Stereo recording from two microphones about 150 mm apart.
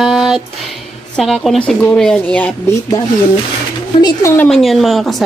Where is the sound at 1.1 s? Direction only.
Centre (ahead or behind).